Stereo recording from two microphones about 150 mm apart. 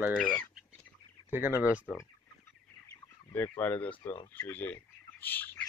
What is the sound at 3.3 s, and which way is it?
Speech, 10° left (ahead or behind).